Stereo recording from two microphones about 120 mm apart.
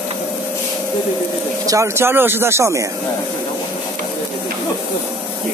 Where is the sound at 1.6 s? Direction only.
25° right (ahead or behind).